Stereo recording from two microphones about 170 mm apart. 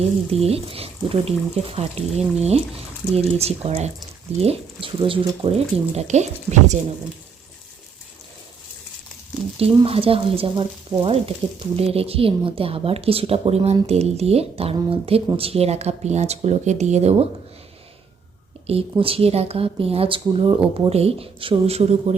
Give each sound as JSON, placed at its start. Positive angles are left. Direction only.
{"t": 0.3, "sound": "a woman's voice", "side_deg": -35}
{"t": 9.6, "sound": "a woman's voice", "side_deg": -35}
{"t": 18.7, "sound": "a woman's voice", "side_deg": -35}